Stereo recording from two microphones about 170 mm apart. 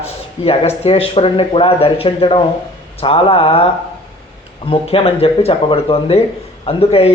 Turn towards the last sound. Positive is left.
turn(degrees=35)  # may be behind; listen again after turning